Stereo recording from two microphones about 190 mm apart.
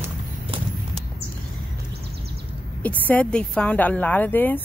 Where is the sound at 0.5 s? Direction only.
30° right (ahead or behind).